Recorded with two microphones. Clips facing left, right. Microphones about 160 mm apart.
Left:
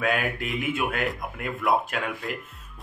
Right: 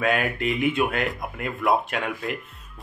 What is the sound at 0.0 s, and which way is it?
Speech, centre (ahead or behind).